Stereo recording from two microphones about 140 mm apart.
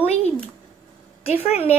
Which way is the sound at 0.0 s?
50° left (ahead or behind).